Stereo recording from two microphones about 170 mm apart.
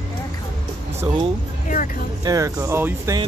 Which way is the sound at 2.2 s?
20° right (ahead or behind).